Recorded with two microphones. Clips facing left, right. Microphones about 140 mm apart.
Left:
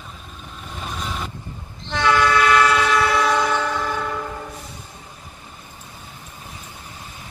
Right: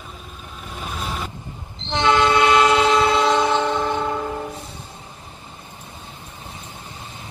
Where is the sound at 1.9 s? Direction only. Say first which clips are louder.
Right 1 dB; 20° right (ahead or behind).